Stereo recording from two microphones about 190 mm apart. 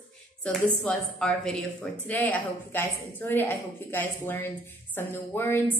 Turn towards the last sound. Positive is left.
turn(degrees=10)  # may be behind; listen again after turning